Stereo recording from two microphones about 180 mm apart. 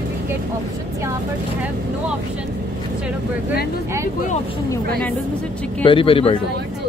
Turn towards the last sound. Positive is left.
turn(degrees=30)  # may be behind; listen again after turning